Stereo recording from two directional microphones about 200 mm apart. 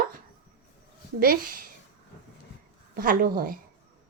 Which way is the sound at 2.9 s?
45° right (ahead or behind).